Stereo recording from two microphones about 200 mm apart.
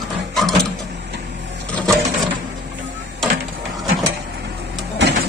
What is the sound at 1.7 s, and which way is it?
Sewing machine, 5° left (ahead or behind).